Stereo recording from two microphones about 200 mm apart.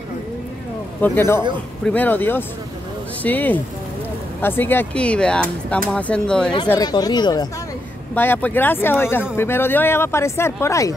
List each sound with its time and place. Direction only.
1.0 s speech: 10° left (ahead or behind)
6.7 s speech: 20° left (ahead or behind)
8.1 s speech: 10° left (ahead or behind)